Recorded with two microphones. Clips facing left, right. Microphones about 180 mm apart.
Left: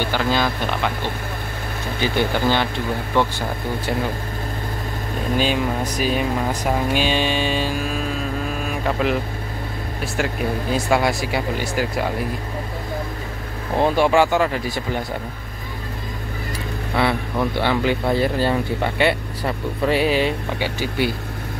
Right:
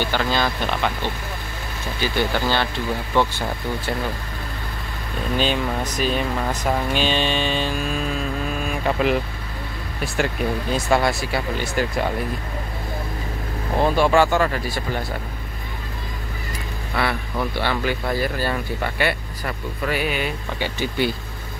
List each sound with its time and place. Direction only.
0.0 s speech: 10° left (ahead or behind)
2.0 s speech: 20° left (ahead or behind)
5.4 s speech: 10° left (ahead or behind)
8.6 s a sound: centre (ahead or behind)
10.1 s speech: 5° left (ahead or behind)
13.7 s speech: 15° left (ahead or behind)
16.9 s speech: 20° left (ahead or behind)
20.5 s speech: 10° left (ahead or behind)